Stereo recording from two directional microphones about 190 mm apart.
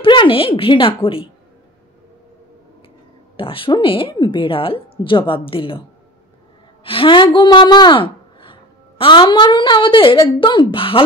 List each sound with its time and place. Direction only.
0.0 s a woman's voice: 25° left (ahead or behind)
3.3 s a woman's voice: 30° left (ahead or behind)
6.8 s a woman's voice: 30° left (ahead or behind)